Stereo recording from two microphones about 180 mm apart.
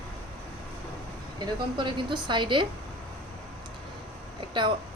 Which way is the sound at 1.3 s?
25° right (ahead or behind).